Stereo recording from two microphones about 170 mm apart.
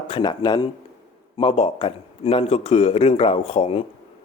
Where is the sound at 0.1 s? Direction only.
25° left (ahead or behind).